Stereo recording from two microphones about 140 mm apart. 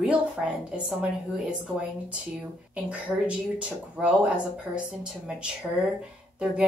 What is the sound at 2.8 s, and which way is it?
Speech, 10° right (ahead or behind).